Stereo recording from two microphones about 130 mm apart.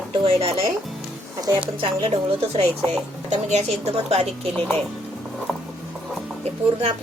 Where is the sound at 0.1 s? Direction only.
45° right (ahead or behind).